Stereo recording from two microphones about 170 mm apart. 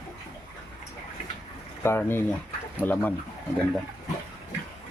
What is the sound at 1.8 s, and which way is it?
Speech, 15° left (ahead or behind).